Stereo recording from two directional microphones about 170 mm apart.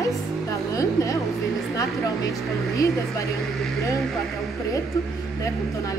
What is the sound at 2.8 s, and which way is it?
Speech, 20° left (ahead or behind).